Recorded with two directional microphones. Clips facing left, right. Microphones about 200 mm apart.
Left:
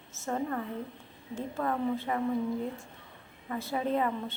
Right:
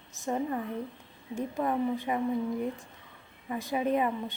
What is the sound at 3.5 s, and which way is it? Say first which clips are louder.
Speech: right 2 dB; 15° right (ahead or behind).